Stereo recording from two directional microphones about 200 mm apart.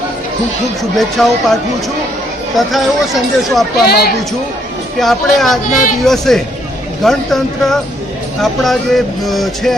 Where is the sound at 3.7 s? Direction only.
50° left (ahead or behind).